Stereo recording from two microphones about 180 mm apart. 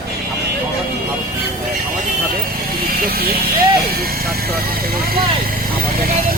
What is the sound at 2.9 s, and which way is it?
Vehicle, 55° right (ahead or behind).